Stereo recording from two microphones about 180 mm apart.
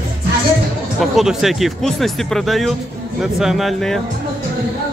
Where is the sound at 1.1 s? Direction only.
Centre (ahead or behind).